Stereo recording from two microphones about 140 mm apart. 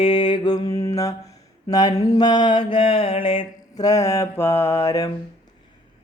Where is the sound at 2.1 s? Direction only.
30° left (ahead or behind).